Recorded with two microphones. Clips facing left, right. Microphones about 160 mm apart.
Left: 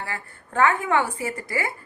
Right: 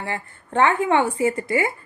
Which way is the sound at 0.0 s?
25° right (ahead or behind).